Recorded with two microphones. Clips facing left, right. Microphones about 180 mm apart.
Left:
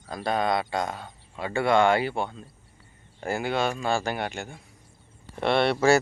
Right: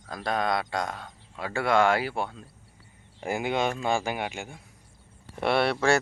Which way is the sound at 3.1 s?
15° right (ahead or behind).